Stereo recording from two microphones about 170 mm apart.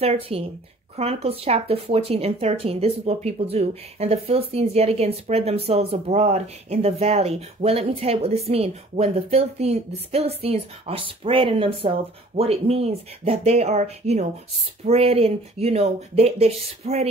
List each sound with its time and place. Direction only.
0.0 s speech: 35° right (ahead or behind)